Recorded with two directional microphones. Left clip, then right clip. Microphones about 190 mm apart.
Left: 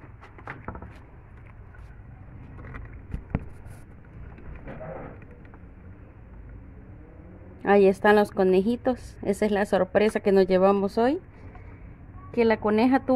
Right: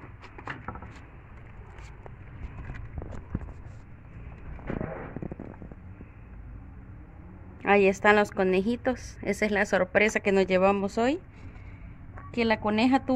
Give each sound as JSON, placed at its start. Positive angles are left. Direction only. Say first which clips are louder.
{"t": 7.6, "sound": "a woman's voice", "louder": "left 2 dB", "side_deg": 25}
{"t": 12.3, "sound": "a woman's voice", "louder": "left 4 dB", "side_deg": 20}